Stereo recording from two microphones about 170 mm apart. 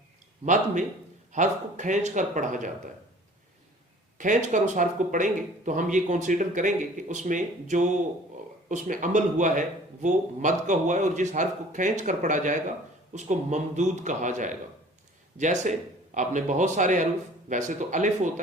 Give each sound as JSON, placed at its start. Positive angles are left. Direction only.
{"t": 0.4, "sound": "a man's voice", "side_deg": -45}
{"t": 4.2, "sound": "a man's voice", "side_deg": -50}